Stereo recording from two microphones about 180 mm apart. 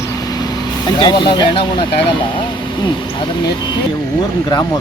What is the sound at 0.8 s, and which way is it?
Speech, 25° left (ahead or behind).